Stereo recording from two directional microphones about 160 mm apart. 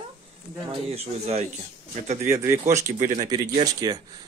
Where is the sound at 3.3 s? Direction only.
25° right (ahead or behind).